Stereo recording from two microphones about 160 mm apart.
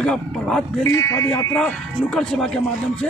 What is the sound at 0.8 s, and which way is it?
Speech, 20° left (ahead or behind).